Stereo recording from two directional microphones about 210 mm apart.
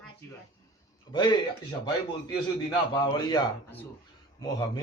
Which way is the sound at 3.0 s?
20° left (ahead or behind).